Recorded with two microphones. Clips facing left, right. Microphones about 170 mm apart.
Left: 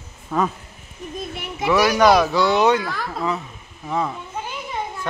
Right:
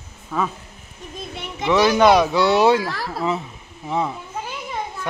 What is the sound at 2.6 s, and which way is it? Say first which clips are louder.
Speech: right 1 dB; 30° right (ahead or behind).